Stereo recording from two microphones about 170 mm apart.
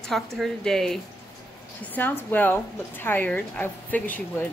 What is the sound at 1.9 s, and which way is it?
A woman's voice, 10° left (ahead or behind).